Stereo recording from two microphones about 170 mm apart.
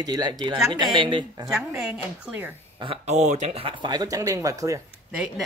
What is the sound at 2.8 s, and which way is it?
Speech, 35° right (ahead or behind).